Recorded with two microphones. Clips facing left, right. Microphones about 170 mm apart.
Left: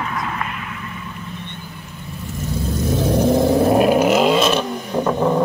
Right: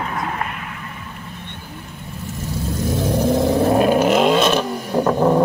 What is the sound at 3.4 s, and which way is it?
Vehicle, 5° left (ahead or behind).